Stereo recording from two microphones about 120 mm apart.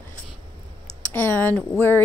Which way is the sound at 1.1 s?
15° left (ahead or behind).